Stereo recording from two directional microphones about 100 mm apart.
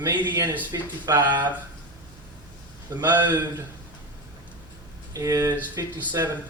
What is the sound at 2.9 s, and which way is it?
Speech, 45° right (ahead or behind).